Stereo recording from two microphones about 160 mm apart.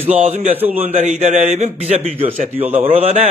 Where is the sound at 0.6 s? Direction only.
10° right (ahead or behind).